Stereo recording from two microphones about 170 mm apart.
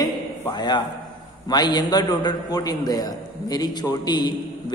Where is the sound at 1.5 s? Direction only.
25° left (ahead or behind).